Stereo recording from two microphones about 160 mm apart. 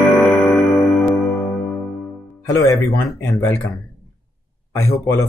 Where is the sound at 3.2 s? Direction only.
20° left (ahead or behind).